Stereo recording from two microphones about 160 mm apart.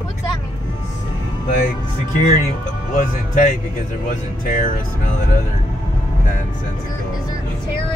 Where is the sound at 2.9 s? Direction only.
55° left (ahead or behind).